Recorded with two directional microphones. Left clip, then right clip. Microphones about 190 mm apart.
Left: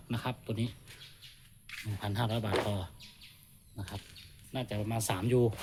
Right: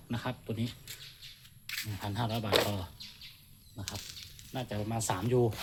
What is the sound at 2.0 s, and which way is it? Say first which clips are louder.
Speech: left 2 dB; 25° left (ahead or behind).